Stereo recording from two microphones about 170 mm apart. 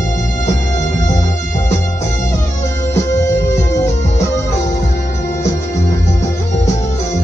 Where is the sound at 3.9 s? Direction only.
45° left (ahead or behind).